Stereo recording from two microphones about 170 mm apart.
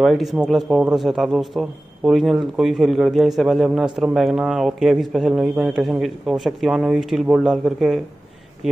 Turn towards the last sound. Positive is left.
turn(degrees=0)  # may be behind; listen again after turning